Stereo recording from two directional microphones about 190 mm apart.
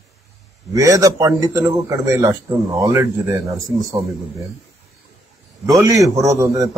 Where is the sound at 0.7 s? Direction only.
15° right (ahead or behind).